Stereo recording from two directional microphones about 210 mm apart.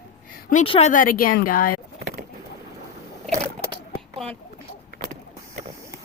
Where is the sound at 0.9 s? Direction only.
40° left (ahead or behind).